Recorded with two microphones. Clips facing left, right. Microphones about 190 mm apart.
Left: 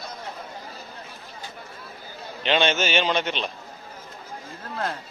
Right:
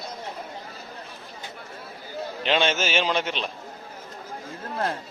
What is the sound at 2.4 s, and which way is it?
A man's voice, centre (ahead or behind).